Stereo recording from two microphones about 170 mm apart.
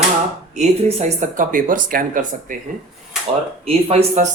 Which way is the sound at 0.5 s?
40° right (ahead or behind).